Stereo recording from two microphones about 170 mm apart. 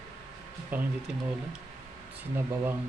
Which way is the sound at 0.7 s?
10° right (ahead or behind).